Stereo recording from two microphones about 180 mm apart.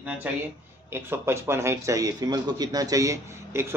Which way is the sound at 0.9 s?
15° right (ahead or behind).